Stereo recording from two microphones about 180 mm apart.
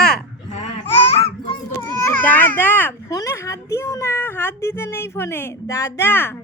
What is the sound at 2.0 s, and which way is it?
Speech, 10° left (ahead or behind).